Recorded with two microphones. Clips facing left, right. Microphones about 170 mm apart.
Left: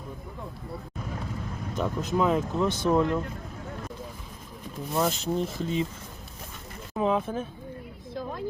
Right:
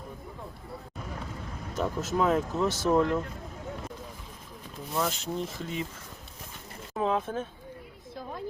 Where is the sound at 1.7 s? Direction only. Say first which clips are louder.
Left 1 dB; 5° right (ahead or behind).